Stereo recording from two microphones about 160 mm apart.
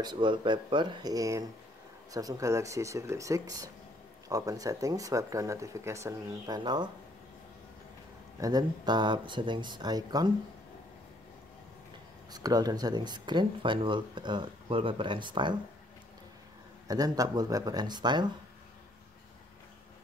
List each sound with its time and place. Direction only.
0.0 s speech: 30° right (ahead or behind)
8.4 s speech: 25° right (ahead or behind)
12.3 s speech: 25° right (ahead or behind)
16.8 s speech: 25° right (ahead or behind)